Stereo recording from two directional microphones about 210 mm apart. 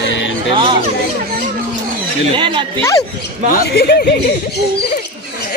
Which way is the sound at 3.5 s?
45° left (ahead or behind).